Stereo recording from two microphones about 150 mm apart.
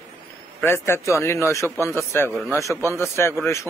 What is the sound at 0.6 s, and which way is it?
A man's voice, 15° left (ahead or behind).